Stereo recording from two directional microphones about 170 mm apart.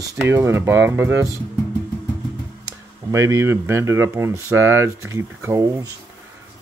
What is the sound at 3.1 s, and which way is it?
Speech, 15° right (ahead or behind).